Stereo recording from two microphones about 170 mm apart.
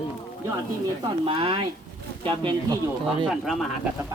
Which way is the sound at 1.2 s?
30° right (ahead or behind).